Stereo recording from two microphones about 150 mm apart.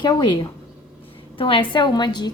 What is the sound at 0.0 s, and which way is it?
Speech, 30° left (ahead or behind).